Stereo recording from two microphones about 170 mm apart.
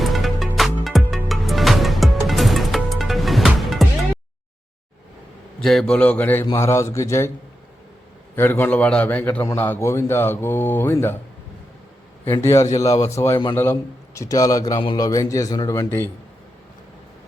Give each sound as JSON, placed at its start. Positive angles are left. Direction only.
{"t": 0.0, "sound": "music", "side_deg": 0}
{"t": 5.5, "sound": "a man's voice", "side_deg": 5}
{"t": 8.4, "sound": "a man's voice", "side_deg": 15}
{"t": 12.2, "sound": "a man's voice", "side_deg": 15}